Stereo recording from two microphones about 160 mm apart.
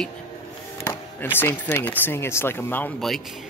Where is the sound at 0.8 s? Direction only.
15° left (ahead or behind).